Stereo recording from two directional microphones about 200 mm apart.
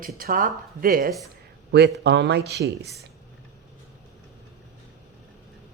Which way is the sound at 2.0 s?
60° right (ahead or behind).